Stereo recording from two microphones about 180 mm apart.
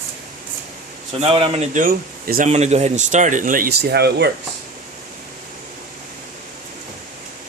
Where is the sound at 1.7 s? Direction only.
50° right (ahead or behind).